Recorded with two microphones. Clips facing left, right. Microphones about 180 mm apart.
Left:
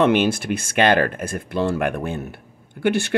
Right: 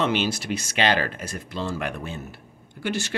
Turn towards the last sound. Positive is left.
turn(degrees=55)  # may be behind; listen again after turning